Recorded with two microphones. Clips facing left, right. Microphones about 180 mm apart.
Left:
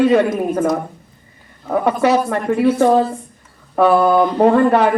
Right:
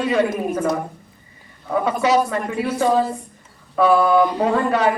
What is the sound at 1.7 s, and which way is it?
A woman's voice, 60° left (ahead or behind).